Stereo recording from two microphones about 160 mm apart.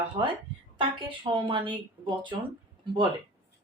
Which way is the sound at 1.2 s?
35° right (ahead or behind).